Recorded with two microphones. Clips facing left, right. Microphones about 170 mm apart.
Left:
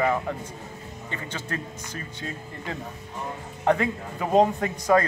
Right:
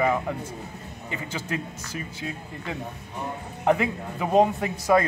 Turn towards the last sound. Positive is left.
turn(degrees=-5)  # may be behind; listen again after turning